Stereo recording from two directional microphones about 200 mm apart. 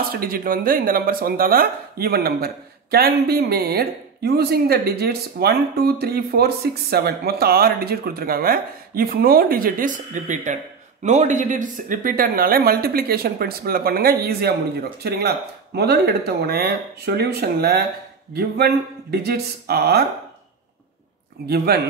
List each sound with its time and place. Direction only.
0.1 s speech: 45° right (ahead or behind)
21.5 s speech: 50° right (ahead or behind)